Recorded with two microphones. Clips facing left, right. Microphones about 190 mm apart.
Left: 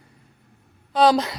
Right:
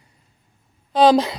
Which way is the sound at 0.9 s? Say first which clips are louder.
Right 3 dB; 15° right (ahead or behind).